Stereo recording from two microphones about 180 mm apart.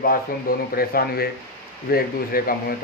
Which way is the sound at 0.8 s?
55° left (ahead or behind).